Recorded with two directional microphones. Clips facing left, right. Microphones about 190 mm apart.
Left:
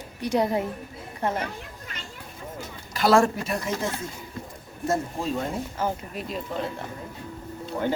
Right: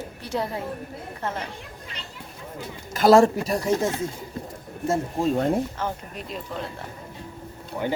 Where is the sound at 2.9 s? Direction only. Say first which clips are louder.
Right 4 dB; 40° right (ahead or behind).